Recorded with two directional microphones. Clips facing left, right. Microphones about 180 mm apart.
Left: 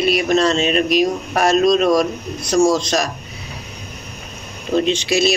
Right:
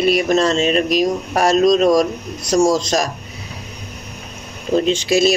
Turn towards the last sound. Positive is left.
turn(degrees=-45)  # may be behind; listen again after turning